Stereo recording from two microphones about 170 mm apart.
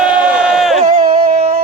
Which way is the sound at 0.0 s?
5° right (ahead or behind).